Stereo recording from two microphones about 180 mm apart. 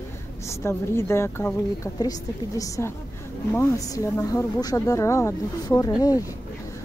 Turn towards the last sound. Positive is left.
turn(degrees=20)  # may be behind; listen again after turning